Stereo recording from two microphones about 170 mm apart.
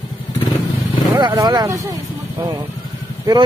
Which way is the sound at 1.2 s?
20° right (ahead or behind).